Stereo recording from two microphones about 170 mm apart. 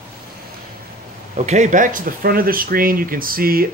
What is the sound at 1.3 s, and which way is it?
Speech, 45° right (ahead or behind).